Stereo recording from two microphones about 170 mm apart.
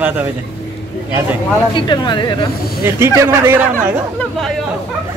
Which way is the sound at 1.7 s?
25° left (ahead or behind).